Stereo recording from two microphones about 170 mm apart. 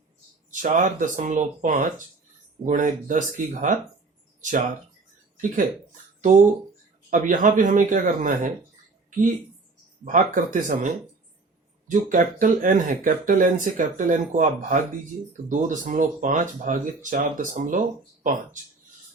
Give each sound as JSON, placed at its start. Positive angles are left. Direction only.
{"t": 0.5, "sound": "speech", "side_deg": -50}
{"t": 6.3, "sound": "speech", "side_deg": -45}
{"t": 10.0, "sound": "speech", "side_deg": -50}